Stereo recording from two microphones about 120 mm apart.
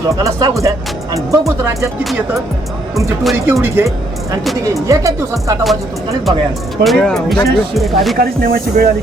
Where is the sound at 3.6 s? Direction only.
20° right (ahead or behind).